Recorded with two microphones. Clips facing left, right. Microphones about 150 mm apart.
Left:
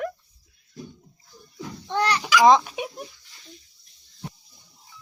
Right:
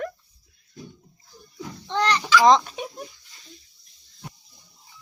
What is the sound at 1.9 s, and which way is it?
A child's voice, 10° left (ahead or behind).